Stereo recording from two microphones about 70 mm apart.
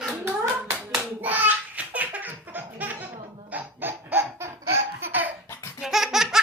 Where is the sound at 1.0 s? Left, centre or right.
Right.